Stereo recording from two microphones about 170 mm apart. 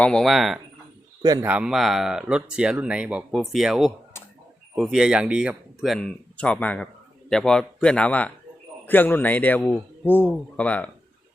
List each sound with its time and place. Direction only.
0.0 s speech: 5° left (ahead or behind)
1.2 s a man's voice: 20° right (ahead or behind)
1.5 s a man's voice: 5° right (ahead or behind)